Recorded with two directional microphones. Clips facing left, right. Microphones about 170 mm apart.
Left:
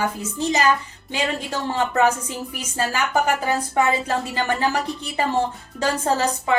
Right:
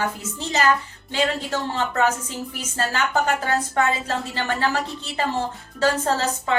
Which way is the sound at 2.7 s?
10° left (ahead or behind).